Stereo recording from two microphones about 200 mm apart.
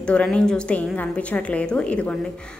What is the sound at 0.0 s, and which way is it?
A woman's voice, 5° left (ahead or behind).